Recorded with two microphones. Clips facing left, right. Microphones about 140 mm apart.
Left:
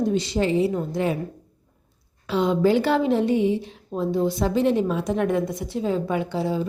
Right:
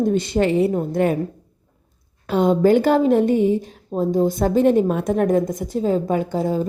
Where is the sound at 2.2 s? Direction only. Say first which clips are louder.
Right 4 dB; 50° right (ahead or behind).